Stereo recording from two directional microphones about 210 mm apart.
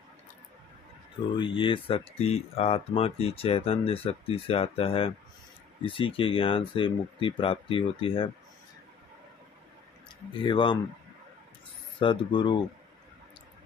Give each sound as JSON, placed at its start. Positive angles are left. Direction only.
{"t": 1.3, "sound": "speech", "side_deg": 25}
{"t": 10.4, "sound": "speech", "side_deg": 20}
{"t": 12.0, "sound": "speech", "side_deg": 25}